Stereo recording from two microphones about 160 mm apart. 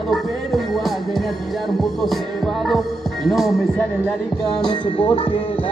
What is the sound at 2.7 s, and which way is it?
Speech, centre (ahead or behind).